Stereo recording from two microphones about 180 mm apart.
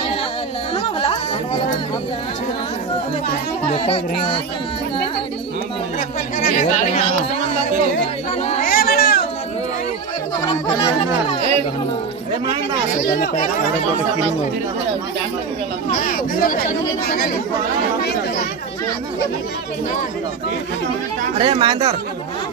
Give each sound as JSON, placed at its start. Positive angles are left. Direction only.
{"t": 0.7, "sound": "music", "side_deg": 30}
{"t": 3.7, "sound": "speech", "side_deg": 30}
{"t": 5.9, "sound": "speech", "side_deg": 45}
{"t": 8.4, "sound": "speech", "side_deg": 35}
{"t": 8.6, "sound": "a sound", "side_deg": 55}
{"t": 15.9, "sound": "speech", "side_deg": 50}
{"t": 21.4, "sound": "speech", "side_deg": -30}